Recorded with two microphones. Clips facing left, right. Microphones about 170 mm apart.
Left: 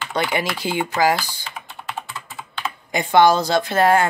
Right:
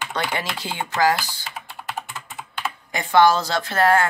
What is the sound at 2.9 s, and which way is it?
Speech, 20° left (ahead or behind).